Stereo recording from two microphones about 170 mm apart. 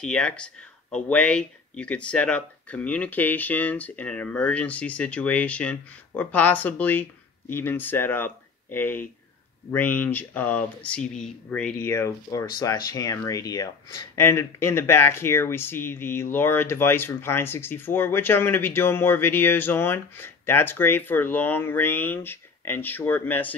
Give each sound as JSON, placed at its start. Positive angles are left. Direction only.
{"t": 0.0, "sound": "speech", "side_deg": 5}
{"t": 11.9, "sound": "speech", "side_deg": 15}